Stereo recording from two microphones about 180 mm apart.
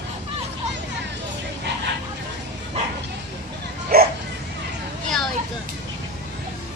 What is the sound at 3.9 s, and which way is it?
Bow-wow, 55° right (ahead or behind).